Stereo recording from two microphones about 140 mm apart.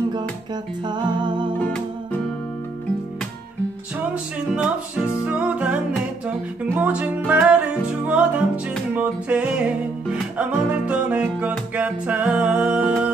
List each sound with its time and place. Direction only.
0.8 s music: 30° right (ahead or behind)
4.1 s music: 5° right (ahead or behind)